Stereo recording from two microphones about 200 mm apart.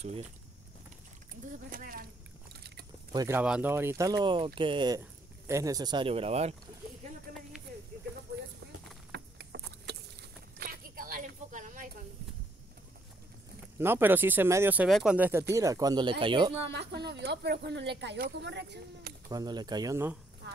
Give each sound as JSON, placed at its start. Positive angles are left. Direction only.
{"t": 1.7, "sound": "speech", "side_deg": -45}
{"t": 2.5, "sound": "a sound", "side_deg": -55}
{"t": 3.1, "sound": "speech", "side_deg": -15}
{"t": 4.2, "sound": "speech", "side_deg": -25}
{"t": 9.1, "sound": "a sound", "side_deg": -55}
{"t": 10.6, "sound": "a sound", "side_deg": -45}
{"t": 13.7, "sound": "speech", "side_deg": -10}
{"t": 16.7, "sound": "speech", "side_deg": -55}
{"t": 19.2, "sound": "speech", "side_deg": -20}